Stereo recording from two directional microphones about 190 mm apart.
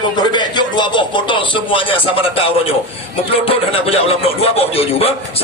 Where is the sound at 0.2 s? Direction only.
25° left (ahead or behind).